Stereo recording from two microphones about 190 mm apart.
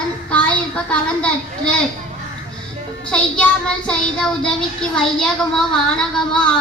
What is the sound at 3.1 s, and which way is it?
A woman's voice, 5° left (ahead or behind).